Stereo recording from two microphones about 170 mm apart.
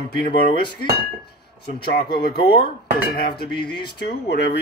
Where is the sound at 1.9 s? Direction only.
65° left (ahead or behind).